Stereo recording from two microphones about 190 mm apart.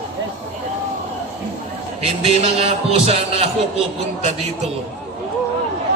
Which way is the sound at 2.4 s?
30° right (ahead or behind).